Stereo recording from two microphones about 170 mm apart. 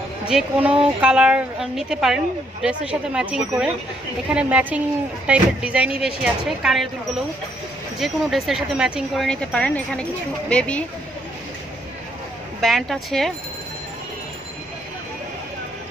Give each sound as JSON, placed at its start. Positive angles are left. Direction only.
{"t": 0.3, "sound": "speech", "side_deg": -5}
{"t": 8.0, "sound": "speech", "side_deg": 0}
{"t": 12.5, "sound": "speech", "side_deg": 0}